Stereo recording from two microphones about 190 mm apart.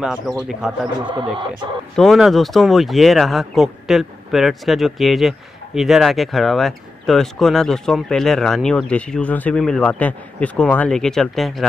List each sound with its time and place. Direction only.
0.0 s speech: 5° right (ahead or behind)
1.0 s speech: 25° right (ahead or behind)
2.0 s speech: centre (ahead or behind)